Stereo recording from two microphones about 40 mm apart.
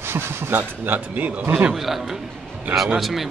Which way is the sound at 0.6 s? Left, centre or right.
Right.